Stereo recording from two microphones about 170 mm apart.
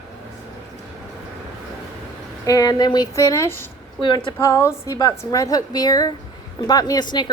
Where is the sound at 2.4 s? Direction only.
20° left (ahead or behind).